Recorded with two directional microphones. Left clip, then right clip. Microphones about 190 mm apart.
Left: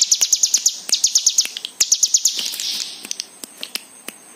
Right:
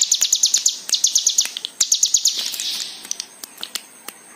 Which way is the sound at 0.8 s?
35° left (ahead or behind).